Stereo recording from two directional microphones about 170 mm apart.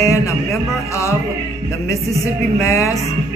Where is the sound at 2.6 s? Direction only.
15° left (ahead or behind).